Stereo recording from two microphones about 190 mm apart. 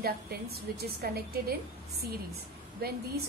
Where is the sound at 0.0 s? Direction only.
55° right (ahead or behind).